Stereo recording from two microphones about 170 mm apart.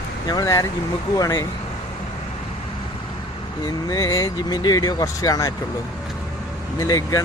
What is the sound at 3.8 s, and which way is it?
Speech, 20° left (ahead or behind).